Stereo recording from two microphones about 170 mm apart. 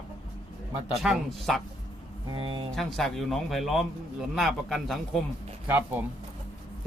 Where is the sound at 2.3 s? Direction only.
30° right (ahead or behind).